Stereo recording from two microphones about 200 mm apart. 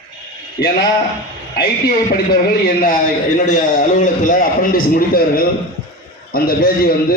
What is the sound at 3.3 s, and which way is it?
A man's voice, 40° left (ahead or behind).